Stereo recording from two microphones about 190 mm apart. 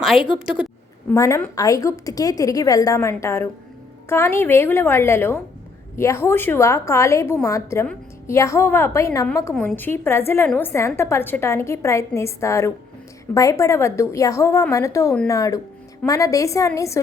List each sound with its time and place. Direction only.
0.0 s a woman's voice: centre (ahead or behind)
1.1 s a woman's voice: 15° left (ahead or behind)